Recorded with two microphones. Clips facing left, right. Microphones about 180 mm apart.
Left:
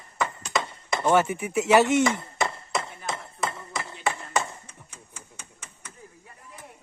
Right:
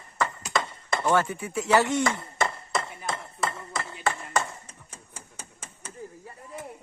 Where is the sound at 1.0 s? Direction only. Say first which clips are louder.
Left 3 dB; 20° left (ahead or behind).